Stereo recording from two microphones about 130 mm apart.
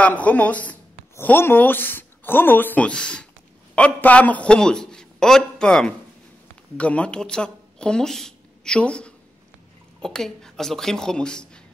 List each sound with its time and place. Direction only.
0.0 s a man's voice: 10° left (ahead or behind)